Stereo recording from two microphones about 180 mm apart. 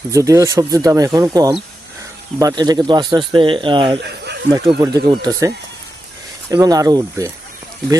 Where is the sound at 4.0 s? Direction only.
70° right (ahead or behind).